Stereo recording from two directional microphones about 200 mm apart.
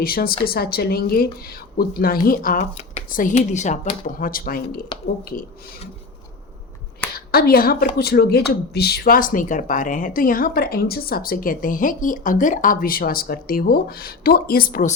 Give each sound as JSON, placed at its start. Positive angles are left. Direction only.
{"t": 0.0, "sound": "a woman's voice", "side_deg": 50}
{"t": 7.3, "sound": "a woman's voice", "side_deg": 50}